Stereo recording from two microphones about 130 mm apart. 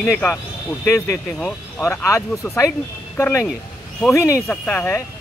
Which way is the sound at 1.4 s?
10° left (ahead or behind).